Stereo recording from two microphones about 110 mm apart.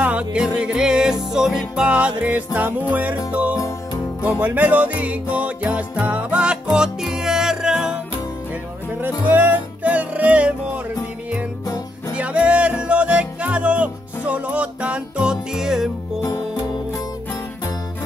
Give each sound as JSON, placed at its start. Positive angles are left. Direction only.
{"t": 0.0, "sound": "music", "side_deg": -10}
{"t": 9.0, "sound": "music", "side_deg": -15}
{"t": 12.1, "sound": "music", "side_deg": -10}
{"t": 16.2, "sound": "music", "side_deg": 25}